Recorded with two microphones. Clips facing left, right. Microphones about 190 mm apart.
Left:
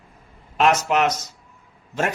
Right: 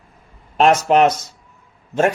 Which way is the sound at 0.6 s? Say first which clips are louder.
Right 5 dB; 30° right (ahead or behind).